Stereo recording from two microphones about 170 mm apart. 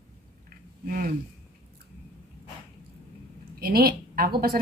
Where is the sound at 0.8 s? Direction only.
55° right (ahead or behind).